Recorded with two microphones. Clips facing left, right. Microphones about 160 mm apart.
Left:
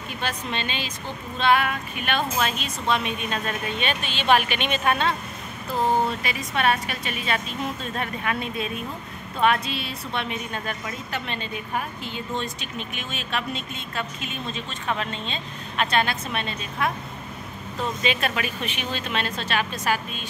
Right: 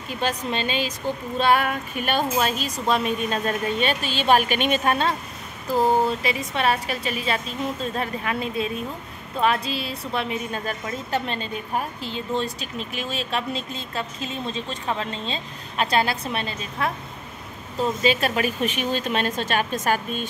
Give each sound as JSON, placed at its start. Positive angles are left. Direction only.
{"t": 0.2, "sound": "a woman's voice", "side_deg": -40}